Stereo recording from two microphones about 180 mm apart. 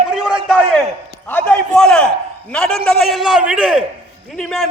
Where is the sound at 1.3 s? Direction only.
10° left (ahead or behind).